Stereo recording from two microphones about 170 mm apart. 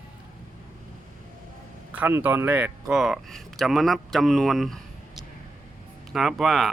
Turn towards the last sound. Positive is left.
turn(degrees=0)  # may be behind; listen again after turning